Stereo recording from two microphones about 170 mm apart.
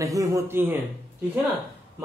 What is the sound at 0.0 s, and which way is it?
Speech, 20° right (ahead or behind).